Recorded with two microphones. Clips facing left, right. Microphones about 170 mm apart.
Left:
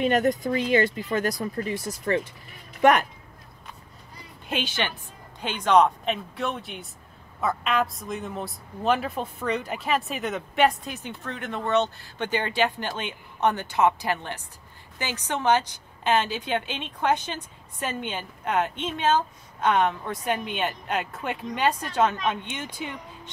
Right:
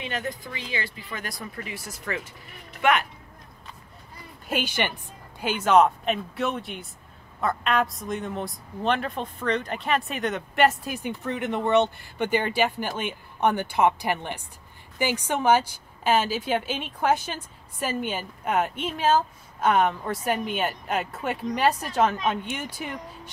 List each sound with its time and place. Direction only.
0.0 s speech: 45° left (ahead or behind)
4.5 s a woman's voice: 10° right (ahead or behind)